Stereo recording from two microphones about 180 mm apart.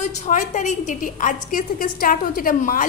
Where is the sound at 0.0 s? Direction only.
40° left (ahead or behind).